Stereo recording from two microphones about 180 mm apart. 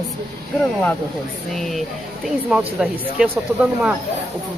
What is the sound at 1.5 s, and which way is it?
Speech, centre (ahead or behind).